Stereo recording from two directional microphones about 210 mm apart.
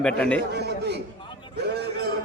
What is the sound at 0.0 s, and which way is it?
Speech, 5° left (ahead or behind).